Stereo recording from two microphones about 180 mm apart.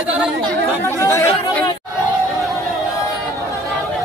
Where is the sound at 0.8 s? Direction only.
15° left (ahead or behind).